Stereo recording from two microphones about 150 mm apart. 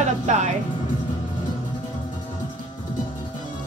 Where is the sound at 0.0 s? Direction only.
50° right (ahead or behind).